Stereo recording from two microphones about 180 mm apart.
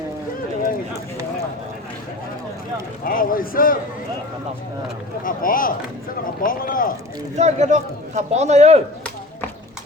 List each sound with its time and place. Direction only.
3.0 s a sound: 50° left (ahead or behind)
5.2 s speech: 50° left (ahead or behind)
7.3 s a man's voice: 40° right (ahead or behind)